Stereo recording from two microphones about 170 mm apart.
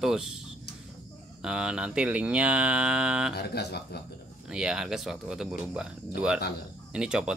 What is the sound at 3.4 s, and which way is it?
Speech, 70° left (ahead or behind).